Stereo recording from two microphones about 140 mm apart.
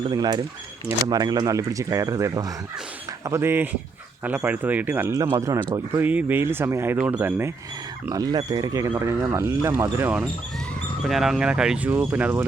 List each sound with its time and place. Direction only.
0.1 s speech: 30° right (ahead or behind)
8.1 s speech: 30° right (ahead or behind); by 10.2 s 15° right (ahead or behind)
11.0 s speech: centre (ahead or behind)